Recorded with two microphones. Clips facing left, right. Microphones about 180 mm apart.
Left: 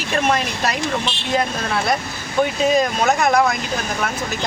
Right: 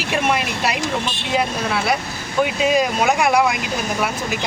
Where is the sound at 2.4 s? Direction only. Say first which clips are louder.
Even; 10° right (ahead or behind).